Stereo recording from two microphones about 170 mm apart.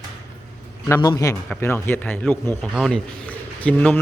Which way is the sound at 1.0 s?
20° left (ahead or behind).